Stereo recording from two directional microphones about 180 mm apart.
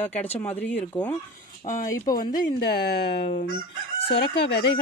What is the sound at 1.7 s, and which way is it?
Speech, 50° left (ahead or behind).